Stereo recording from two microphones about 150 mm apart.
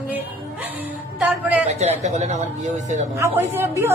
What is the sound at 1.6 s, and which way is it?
Speech, 50° right (ahead or behind).